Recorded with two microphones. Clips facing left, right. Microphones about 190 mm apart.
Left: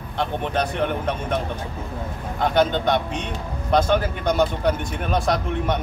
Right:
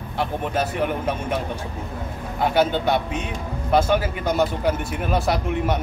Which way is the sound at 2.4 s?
10° right (ahead or behind).